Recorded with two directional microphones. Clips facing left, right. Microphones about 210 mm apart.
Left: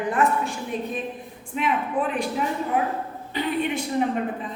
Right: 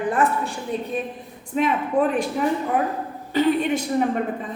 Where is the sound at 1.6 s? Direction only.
45° right (ahead or behind).